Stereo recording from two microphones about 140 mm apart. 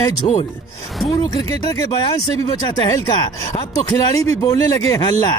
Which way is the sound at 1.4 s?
25° left (ahead or behind).